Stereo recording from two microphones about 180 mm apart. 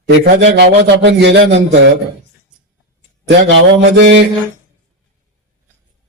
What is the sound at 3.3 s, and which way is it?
Mantra, 80° right.